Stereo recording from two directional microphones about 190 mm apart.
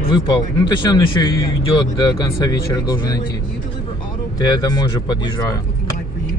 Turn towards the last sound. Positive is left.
turn(degrees=20)  # may be behind; listen again after turning